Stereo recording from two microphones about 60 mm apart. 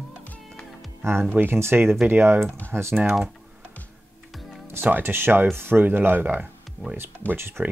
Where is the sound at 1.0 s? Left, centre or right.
Right.